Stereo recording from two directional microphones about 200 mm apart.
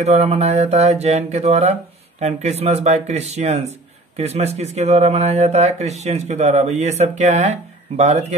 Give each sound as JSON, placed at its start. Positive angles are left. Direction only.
{"t": 0.0, "sound": "speech", "side_deg": -30}